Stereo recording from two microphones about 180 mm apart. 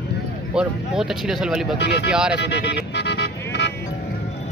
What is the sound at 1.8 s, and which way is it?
Speech, 70° left (ahead or behind).